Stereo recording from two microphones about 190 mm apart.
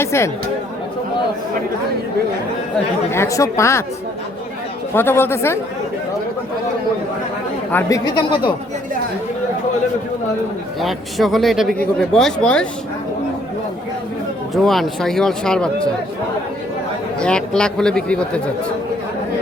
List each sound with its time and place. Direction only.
0.0 s speech: 15° left (ahead or behind)
3.1 s speech: 15° left (ahead or behind)
4.9 s speech: 10° left (ahead or behind)
7.7 s speech: 15° left (ahead or behind)
10.8 s speech: centre (ahead or behind)
14.5 s speech: centre (ahead or behind)
17.2 s speech: 5° left (ahead or behind)